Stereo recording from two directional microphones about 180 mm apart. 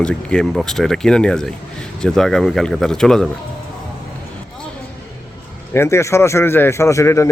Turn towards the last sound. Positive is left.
turn(degrees=15)  # may be behind; listen again after turning